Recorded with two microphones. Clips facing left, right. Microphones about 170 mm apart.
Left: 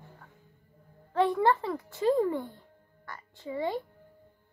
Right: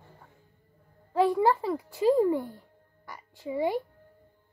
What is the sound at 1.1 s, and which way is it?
Speech, 10° right (ahead or behind).